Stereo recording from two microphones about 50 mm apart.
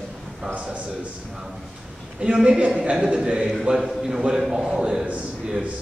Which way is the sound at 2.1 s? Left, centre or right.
Centre.